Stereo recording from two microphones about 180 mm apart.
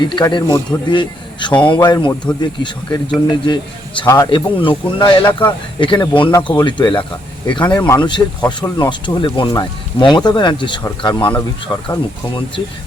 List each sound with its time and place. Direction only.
0.0 s speech: 25° left (ahead or behind)
4.0 s speech: 15° left (ahead or behind)
4.6 s speech: 25° left (ahead or behind)
7.7 s speech: 10° left (ahead or behind)
7.9 s speech: 25° left (ahead or behind)